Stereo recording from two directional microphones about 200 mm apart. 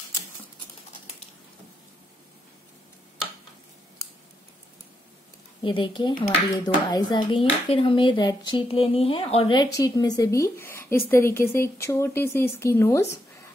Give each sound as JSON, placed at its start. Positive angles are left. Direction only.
{"t": 5.6, "sound": "speech", "side_deg": 25}